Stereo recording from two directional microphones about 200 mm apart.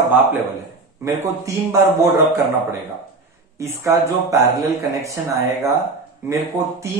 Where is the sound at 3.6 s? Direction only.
15° right (ahead or behind).